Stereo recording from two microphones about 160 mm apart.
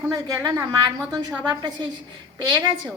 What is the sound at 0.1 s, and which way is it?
A woman's voice, 20° right (ahead or behind).